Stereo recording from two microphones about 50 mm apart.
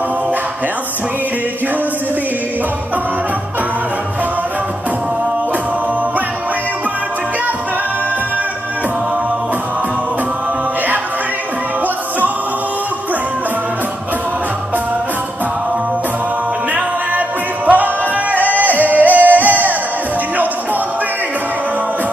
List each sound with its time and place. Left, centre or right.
17.6 s music: right